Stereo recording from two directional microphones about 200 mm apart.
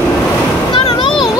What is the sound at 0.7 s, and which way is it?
Music, 25° left (ahead or behind).